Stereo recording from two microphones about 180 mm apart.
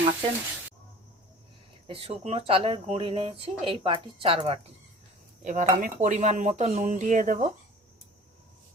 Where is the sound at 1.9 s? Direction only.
30° right (ahead or behind).